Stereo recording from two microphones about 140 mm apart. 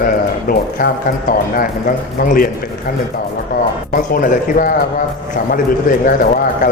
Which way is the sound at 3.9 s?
90° left.